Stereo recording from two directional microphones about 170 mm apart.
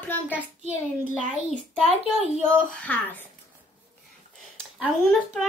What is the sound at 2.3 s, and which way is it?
Speech, 5° left (ahead or behind).